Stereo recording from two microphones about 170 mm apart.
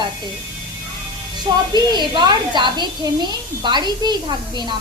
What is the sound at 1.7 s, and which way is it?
A woman's voice, 25° right (ahead or behind).